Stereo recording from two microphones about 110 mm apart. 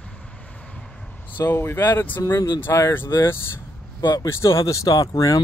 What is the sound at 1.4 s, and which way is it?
Speech, 20° left (ahead or behind).